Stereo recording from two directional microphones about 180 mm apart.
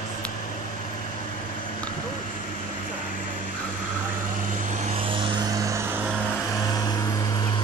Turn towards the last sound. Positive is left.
turn(degrees=-20)  # may be behind; listen again after turning